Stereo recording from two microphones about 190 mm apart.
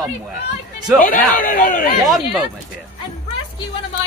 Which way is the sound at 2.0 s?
Centre (ahead or behind).